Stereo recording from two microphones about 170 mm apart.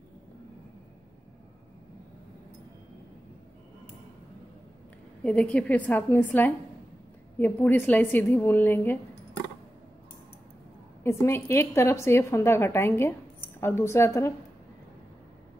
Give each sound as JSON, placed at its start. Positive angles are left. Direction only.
{"t": 5.2, "sound": "a woman's voice", "side_deg": 5}
{"t": 11.1, "sound": "a woman's voice", "side_deg": 15}